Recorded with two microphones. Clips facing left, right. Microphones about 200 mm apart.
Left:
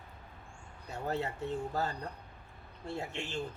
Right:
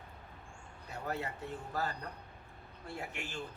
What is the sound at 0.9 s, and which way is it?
A man's voice, 25° left (ahead or behind).